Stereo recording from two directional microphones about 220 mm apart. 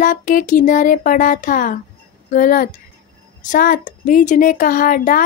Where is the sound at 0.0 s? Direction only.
35° left (ahead or behind).